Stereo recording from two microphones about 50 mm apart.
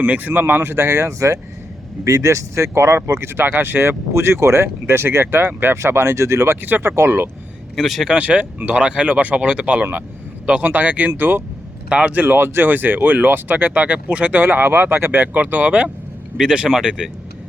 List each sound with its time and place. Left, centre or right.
0.0 s speech: right
2.0 s speech: right
4.1 s speech: right
5.7 s speech: right
6.6 s speech: right
6.8 s speech: right
7.8 s speech: centre
8.2 s speech: right
10.7 s speech: right
11.9 s speech: centre
12.1 s speech: right
14.4 s speech: right
16.4 s speech: centre